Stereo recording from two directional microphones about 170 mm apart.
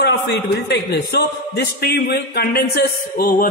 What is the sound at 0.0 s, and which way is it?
A man's voice, 85° left.